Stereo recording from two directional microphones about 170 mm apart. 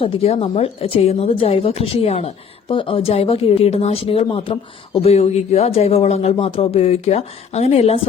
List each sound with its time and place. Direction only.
0.0 s a woman's voice: 35° left (ahead or behind)